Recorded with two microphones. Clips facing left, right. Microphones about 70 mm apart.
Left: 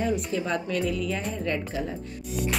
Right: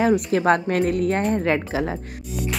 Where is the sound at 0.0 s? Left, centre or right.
Right.